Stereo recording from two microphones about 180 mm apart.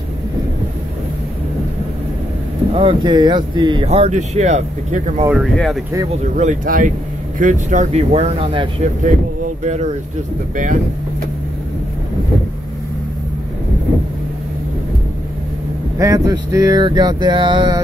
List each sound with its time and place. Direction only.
2.7 s speech: 30° right (ahead or behind)
5.3 s speech: centre (ahead or behind)
6.3 s speech: 45° right (ahead or behind); by 8.6 s 30° right (ahead or behind)
9.0 s speech: 45° right (ahead or behind)
16.0 s speech: 20° right (ahead or behind)